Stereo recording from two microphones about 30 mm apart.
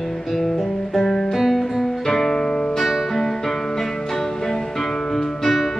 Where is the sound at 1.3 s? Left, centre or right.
Centre; by 2.6 s left.